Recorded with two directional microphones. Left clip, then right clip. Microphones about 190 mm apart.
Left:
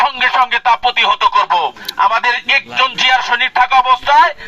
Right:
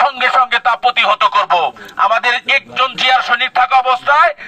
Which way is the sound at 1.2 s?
35° right (ahead or behind).